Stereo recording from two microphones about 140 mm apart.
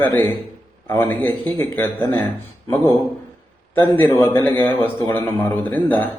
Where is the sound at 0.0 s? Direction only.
15° left (ahead or behind).